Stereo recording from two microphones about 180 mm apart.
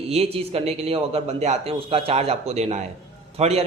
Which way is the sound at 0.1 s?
35° right (ahead or behind).